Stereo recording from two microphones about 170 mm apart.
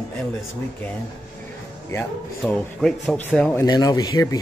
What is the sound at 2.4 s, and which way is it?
Speech, 5° left (ahead or behind).